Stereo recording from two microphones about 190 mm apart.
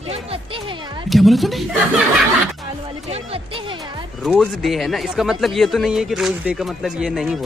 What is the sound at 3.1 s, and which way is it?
Speech, 30° right (ahead or behind).